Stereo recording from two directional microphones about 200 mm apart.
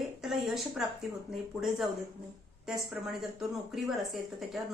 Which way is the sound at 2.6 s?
Centre (ahead or behind).